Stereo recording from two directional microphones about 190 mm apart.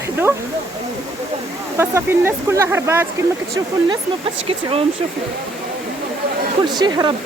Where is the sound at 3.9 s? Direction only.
30° right (ahead or behind).